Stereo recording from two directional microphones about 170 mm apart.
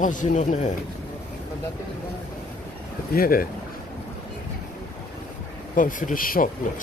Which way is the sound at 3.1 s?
60° left (ahead or behind).